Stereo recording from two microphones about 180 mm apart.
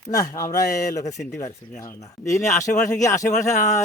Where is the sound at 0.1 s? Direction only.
15° left (ahead or behind).